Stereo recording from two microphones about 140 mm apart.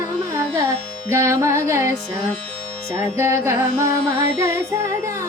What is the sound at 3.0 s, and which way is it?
Carnatic music, 20° right (ahead or behind).